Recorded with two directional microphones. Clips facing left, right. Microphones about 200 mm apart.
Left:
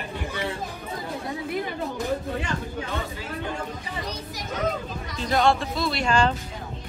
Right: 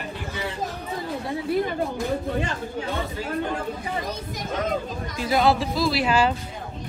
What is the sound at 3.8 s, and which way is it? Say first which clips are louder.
Speech: right 4 dB; 50° right (ahead or behind).